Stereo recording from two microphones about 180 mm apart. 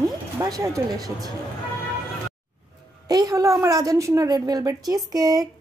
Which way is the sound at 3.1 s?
20° right (ahead or behind).